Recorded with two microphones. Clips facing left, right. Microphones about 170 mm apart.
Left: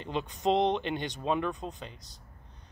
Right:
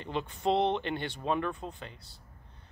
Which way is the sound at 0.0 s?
20° left (ahead or behind).